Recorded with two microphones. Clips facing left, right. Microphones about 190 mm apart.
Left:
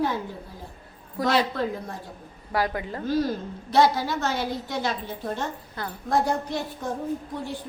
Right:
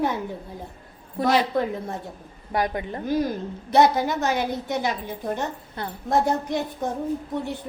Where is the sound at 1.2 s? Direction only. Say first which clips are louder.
Right 2 dB; 20° right (ahead or behind).